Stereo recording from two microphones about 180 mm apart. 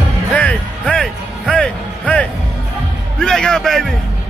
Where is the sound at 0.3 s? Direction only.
5° left (ahead or behind).